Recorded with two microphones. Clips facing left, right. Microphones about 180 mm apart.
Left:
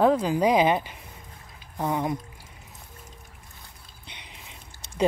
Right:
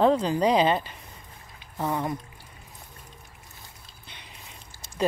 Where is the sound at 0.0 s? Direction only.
10° left (ahead or behind).